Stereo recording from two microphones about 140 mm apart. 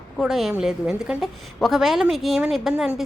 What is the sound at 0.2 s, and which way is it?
A woman's voice, centre (ahead or behind).